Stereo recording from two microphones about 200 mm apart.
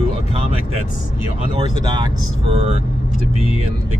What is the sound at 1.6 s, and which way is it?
Speech, 30° right (ahead or behind).